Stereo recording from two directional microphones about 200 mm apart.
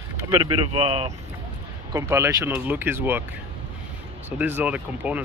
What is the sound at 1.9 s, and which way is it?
Speech, 15° right (ahead or behind).